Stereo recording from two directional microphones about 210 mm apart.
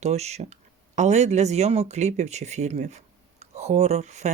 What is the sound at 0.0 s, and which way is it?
Speech, 30° right (ahead or behind).